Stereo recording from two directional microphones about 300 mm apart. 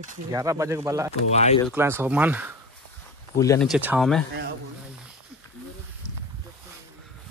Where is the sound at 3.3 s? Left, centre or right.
Centre.